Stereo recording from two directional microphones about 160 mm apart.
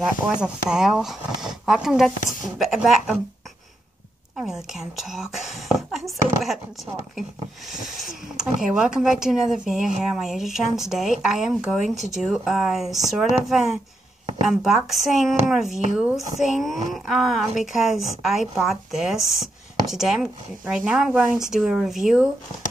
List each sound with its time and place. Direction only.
0.0 s speech: 5° right (ahead or behind)
4.4 s speech: 5° right (ahead or behind)
7.8 s speech: 55° left (ahead or behind)
8.4 s speech: 5° right (ahead or behind)